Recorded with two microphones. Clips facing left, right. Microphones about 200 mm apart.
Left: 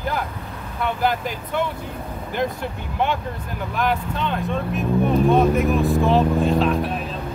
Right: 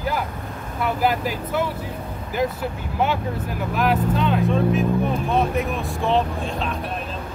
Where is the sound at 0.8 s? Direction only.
5° right (ahead or behind).